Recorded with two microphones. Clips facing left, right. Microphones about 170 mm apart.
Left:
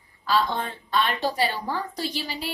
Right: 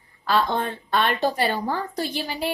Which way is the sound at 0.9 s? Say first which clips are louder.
Right 2 dB; 55° right (ahead or behind).